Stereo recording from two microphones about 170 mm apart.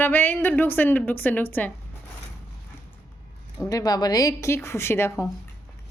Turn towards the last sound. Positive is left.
turn(degrees=15)  # may be behind; listen again after turning